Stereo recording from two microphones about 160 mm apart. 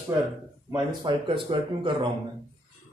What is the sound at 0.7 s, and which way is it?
Speech, 30° right (ahead or behind).